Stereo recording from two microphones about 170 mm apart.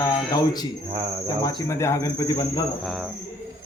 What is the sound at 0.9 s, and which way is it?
Speech, 25° right (ahead or behind).